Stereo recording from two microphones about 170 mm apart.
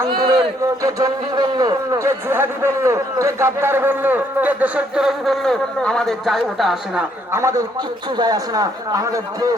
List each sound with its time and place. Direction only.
0.8 s a man's voice: 20° right (ahead or behind); by 7.0 s centre (ahead or behind)
7.3 s a man's voice: 15° right (ahead or behind)